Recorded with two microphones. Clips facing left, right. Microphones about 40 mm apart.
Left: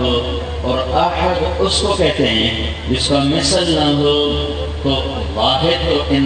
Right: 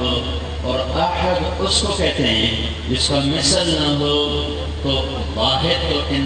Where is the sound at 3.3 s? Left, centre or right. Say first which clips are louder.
Left 3 dB; left.